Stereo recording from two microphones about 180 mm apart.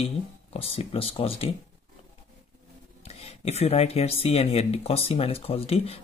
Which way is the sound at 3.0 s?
35° left (ahead or behind).